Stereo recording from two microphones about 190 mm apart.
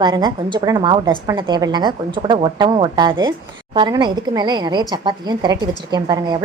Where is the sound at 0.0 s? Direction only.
20° right (ahead or behind).